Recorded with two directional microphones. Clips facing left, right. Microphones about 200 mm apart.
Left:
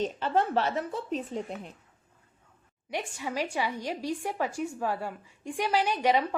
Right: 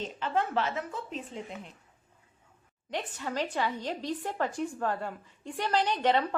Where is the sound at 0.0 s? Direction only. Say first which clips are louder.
Left 4 dB; 35° left (ahead or behind).